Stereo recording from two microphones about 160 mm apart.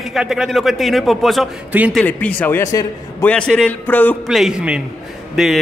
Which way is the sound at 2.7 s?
20° left (ahead or behind).